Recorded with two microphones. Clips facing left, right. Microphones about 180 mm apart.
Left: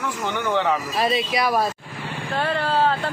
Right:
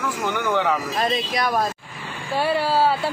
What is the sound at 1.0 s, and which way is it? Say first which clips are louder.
Speech: left 3 dB; 5° left (ahead or behind).